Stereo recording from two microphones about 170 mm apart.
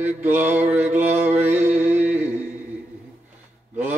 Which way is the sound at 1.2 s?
10° right (ahead or behind).